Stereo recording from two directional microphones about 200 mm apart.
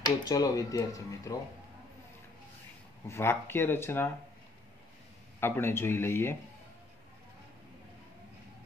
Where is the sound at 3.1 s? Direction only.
10° left (ahead or behind).